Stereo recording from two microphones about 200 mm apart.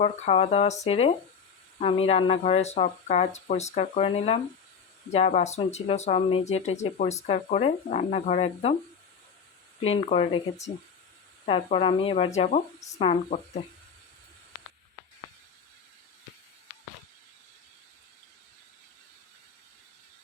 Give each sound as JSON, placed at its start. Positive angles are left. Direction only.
{"t": 0.0, "sound": "speech", "side_deg": 35}
{"t": 9.8, "sound": "speech", "side_deg": 30}